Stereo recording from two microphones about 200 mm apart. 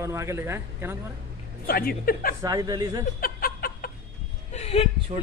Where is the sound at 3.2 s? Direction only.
45° left (ahead or behind).